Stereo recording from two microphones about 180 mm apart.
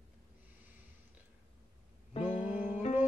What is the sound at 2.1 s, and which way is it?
Music, 40° left (ahead or behind).